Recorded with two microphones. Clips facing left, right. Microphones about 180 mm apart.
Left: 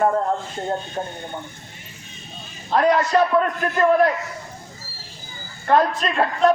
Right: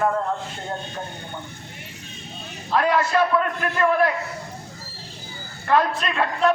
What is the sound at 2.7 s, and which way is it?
Speech, 40° left (ahead or behind).